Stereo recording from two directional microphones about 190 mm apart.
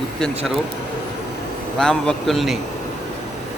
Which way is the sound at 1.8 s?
5° left (ahead or behind).